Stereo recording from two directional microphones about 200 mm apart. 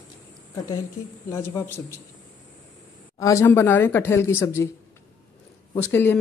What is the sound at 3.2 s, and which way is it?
Speech, 15° left (ahead or behind).